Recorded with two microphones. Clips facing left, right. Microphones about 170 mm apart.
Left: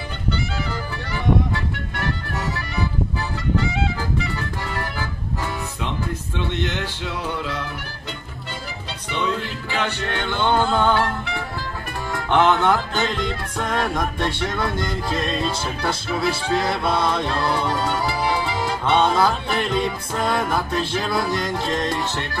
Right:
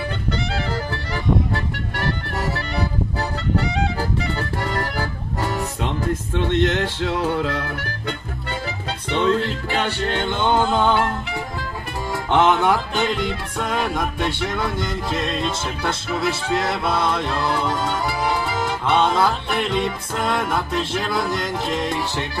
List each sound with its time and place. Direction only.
0.3 s music: 40° right (ahead or behind)
4.4 s music: 35° right (ahead or behind)
9.1 s music: 40° right (ahead or behind); by 11.4 s 20° right (ahead or behind)
12.1 s speech: 15° right (ahead or behind)
12.9 s music: 5° right (ahead or behind)
21.8 s music: 15° right (ahead or behind)